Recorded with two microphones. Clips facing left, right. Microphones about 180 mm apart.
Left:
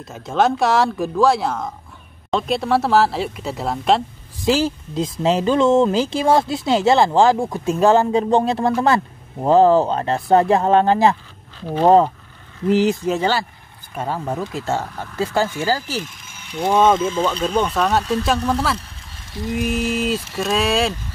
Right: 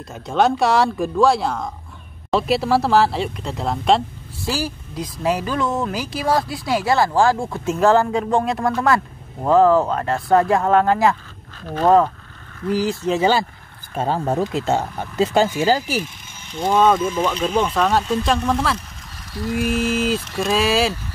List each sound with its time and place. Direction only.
0.0 s speech: centre (ahead or behind)
4.4 s speech: 20° left (ahead or behind)
13.2 s speech: 20° right (ahead or behind)
13.9 s speech: 30° right (ahead or behind)
16.5 s speech: 15° left (ahead or behind)
17.2 s speech: 10° right (ahead or behind)